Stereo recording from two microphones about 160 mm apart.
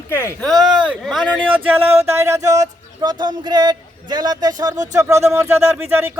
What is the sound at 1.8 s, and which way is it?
Speech, 40° right (ahead or behind).